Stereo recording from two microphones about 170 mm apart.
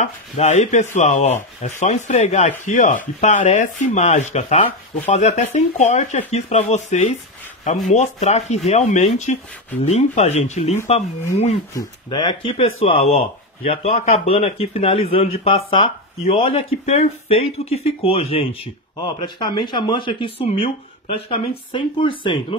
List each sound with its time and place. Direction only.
0.0 s a man's voice: 45° left (ahead or behind)
11.7 s a man's voice: 25° left (ahead or behind)